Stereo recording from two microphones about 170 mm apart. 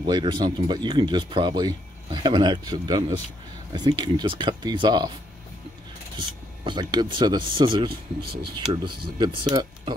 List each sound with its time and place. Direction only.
0.0 s speech: 30° right (ahead or behind)
6.1 s speech: 30° right (ahead or behind)